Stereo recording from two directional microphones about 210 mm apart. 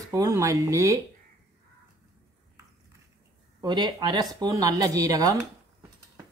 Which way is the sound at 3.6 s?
20° right (ahead or behind).